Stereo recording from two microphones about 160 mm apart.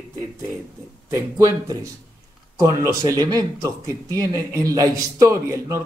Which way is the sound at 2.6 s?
20° right (ahead or behind).